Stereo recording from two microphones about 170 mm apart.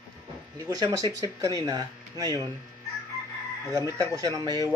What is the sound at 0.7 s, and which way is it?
Speech, 20° right (ahead or behind).